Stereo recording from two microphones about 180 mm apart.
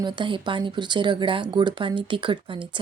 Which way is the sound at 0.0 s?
25° right (ahead or behind).